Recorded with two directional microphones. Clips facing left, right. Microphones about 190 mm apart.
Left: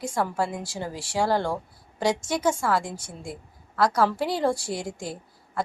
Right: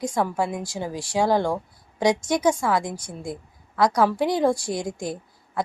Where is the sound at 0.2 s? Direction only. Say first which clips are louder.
Right 1 dB; 15° right (ahead or behind).